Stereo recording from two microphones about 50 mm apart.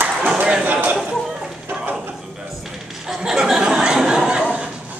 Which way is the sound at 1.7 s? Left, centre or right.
Right.